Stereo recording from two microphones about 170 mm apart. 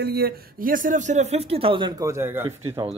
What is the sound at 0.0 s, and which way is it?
Speech, 70° right (ahead or behind).